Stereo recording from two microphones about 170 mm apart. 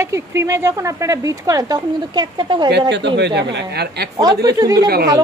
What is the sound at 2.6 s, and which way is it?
A woman's voice, 85° right.